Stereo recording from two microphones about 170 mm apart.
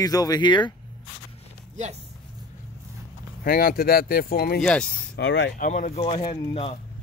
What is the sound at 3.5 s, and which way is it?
Speech, 60° left (ahead or behind).